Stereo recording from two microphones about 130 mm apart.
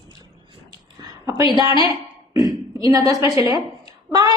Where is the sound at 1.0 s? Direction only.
30° right (ahead or behind).